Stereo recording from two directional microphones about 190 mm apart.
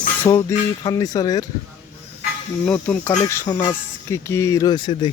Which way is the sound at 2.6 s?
10° left (ahead or behind).